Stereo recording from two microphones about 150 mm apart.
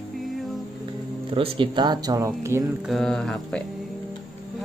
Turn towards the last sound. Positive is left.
turn(degrees=5)  # may be behind; listen again after turning